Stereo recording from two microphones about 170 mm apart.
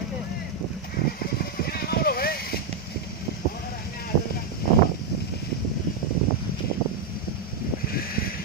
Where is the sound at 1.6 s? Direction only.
65° left (ahead or behind).